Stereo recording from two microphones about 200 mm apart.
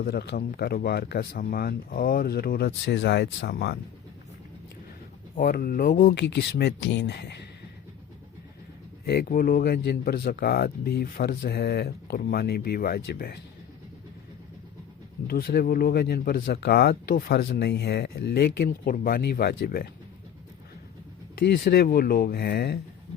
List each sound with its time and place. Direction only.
0.0 s speech: 50° left (ahead or behind)
5.4 s speech: 45° left (ahead or behind)
9.0 s speech: 50° left (ahead or behind)
15.3 s speech: 50° left (ahead or behind)
21.3 s speech: 50° left (ahead or behind)